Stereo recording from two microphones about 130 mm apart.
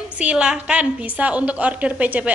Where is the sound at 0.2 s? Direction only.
10° right (ahead or behind).